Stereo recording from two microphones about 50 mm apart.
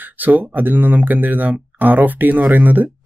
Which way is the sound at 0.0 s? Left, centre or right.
Right.